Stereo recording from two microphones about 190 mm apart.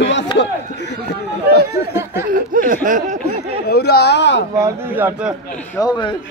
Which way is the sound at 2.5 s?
45° right (ahead or behind).